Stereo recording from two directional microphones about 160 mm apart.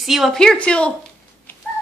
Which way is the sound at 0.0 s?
Centre (ahead or behind).